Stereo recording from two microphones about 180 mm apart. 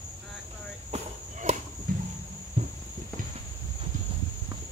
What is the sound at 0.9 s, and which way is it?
Walk, 35° right (ahead or behind).